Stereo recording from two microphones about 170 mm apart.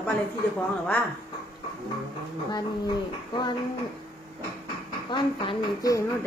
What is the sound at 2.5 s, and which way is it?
Speech, 25° left (ahead or behind).